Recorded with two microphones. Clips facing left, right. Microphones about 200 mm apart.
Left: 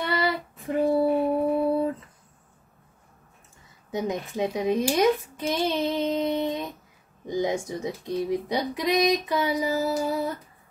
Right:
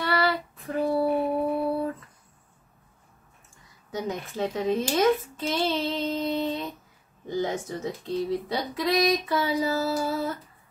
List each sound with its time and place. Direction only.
0.0 s child singing: 20° left (ahead or behind)
0.7 s female singing: 20° left (ahead or behind)
3.9 s speech: 15° left (ahead or behind)